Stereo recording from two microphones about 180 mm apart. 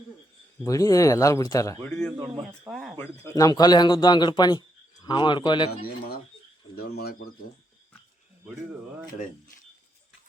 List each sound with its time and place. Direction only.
0.6 s speech: 20° left (ahead or behind)
2.1 s speech: 25° right (ahead or behind)
2.5 s speech: 10° right (ahead or behind)
2.9 s speech: 15° left (ahead or behind)
6.7 s speech: 60° left (ahead or behind)